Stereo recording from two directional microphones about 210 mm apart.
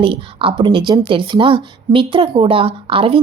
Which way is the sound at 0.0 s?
25° right (ahead or behind).